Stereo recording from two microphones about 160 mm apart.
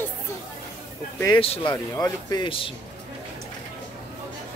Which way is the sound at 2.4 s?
35° left (ahead or behind).